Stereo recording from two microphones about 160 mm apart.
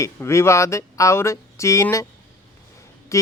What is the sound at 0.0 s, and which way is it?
Speech, 15° left (ahead or behind).